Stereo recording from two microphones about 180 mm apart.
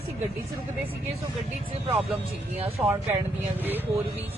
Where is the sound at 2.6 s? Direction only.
35° right (ahead or behind).